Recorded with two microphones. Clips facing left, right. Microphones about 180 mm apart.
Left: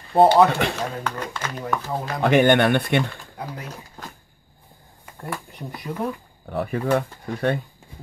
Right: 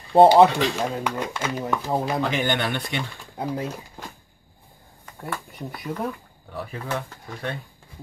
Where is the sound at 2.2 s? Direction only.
60° left (ahead or behind).